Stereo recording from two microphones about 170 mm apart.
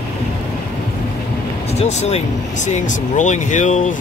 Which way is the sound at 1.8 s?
40° left (ahead or behind).